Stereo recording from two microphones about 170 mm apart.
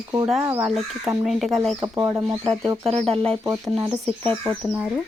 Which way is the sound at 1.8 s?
20° right (ahead or behind).